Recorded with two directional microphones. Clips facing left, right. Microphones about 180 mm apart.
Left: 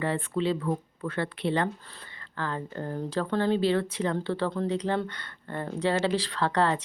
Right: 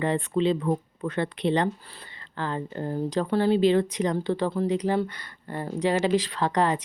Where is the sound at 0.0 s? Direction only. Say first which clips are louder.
Right 4 dB; 20° right (ahead or behind).